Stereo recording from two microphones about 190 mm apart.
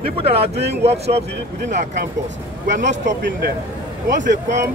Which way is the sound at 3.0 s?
70° right (ahead or behind).